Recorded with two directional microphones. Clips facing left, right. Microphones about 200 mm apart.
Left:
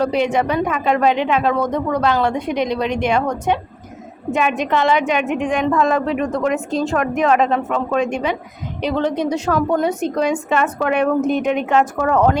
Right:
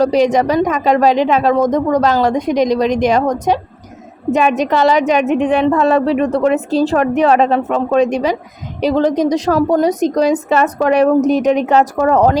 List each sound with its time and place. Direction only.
0.0 s a woman's voice: 40° right (ahead or behind)